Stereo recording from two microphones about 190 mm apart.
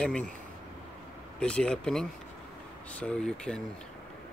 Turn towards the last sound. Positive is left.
turn(degrees=5)  # may be behind; listen again after turning